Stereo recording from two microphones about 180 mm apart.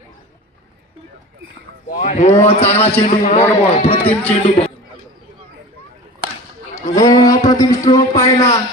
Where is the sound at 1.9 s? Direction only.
40° left (ahead or behind).